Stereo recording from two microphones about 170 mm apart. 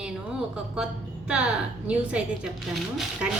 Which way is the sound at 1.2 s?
5° right (ahead or behind).